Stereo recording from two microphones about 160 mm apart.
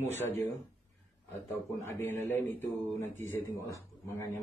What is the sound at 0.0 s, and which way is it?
Speech, 15° left (ahead or behind).